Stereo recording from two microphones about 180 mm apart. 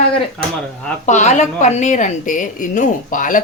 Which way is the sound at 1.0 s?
40° left (ahead or behind).